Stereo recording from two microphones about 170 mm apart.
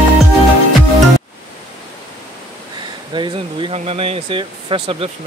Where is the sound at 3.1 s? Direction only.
30° right (ahead or behind).